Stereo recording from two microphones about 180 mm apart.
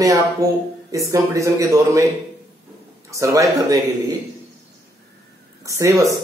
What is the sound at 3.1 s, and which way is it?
Speech, 20° right (ahead or behind).